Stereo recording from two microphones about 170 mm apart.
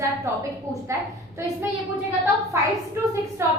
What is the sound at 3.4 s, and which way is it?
Speech, 15° right (ahead or behind).